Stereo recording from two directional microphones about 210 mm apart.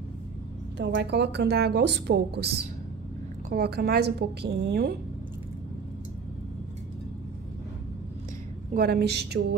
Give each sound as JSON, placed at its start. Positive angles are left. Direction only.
{"t": 0.7, "sound": "a woman's voice", "side_deg": -55}
{"t": 3.4, "sound": "a woman's voice", "side_deg": -45}
{"t": 8.7, "sound": "a woman's voice", "side_deg": -45}